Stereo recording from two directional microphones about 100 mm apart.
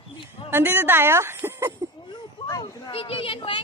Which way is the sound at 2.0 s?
40° left (ahead or behind).